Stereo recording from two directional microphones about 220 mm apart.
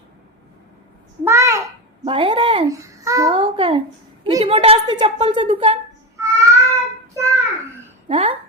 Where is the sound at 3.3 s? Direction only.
25° right (ahead or behind).